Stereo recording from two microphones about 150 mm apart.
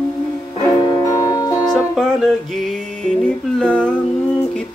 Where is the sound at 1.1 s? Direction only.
25° left (ahead or behind).